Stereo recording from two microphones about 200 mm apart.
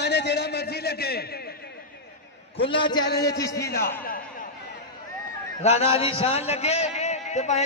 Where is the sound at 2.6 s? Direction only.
25° left (ahead or behind).